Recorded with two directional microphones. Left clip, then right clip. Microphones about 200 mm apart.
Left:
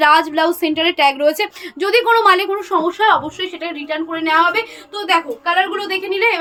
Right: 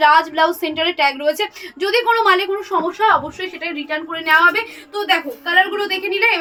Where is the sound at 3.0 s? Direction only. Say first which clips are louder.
Left 1 dB; 35° left (ahead or behind).